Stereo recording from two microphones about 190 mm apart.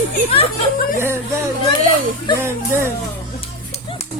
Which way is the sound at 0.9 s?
15° right (ahead or behind).